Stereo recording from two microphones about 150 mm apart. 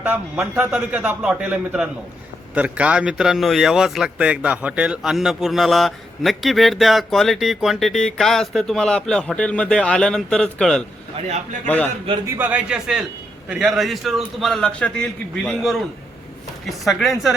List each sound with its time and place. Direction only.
0.0 s a man's voice: 10° right (ahead or behind); by 11.9 s 10° left (ahead or behind)
12.2 s a man's voice: 10° right (ahead or behind)